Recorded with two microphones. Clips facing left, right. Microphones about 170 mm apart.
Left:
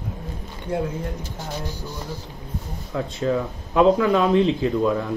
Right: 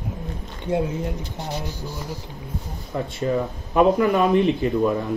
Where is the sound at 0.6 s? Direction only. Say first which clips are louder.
Right 2 dB; 20° right (ahead or behind).